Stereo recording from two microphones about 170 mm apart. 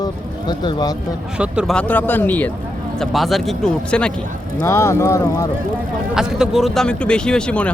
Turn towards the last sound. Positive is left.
turn(degrees=5)  # may be behind; listen again after turning